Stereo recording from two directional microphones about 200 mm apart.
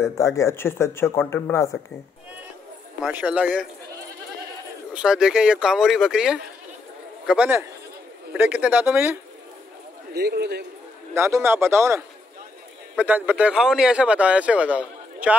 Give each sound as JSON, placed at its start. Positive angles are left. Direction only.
{"t": 0.0, "sound": "speech", "side_deg": 15}
{"t": 3.0, "sound": "speech", "side_deg": -10}
{"t": 4.9, "sound": "speech", "side_deg": -5}
{"t": 10.1, "sound": "a man's voice", "side_deg": -55}
{"t": 11.1, "sound": "speech", "side_deg": -15}